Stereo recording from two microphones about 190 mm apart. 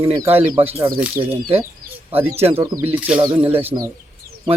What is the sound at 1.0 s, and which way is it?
Speech, 5° right (ahead or behind).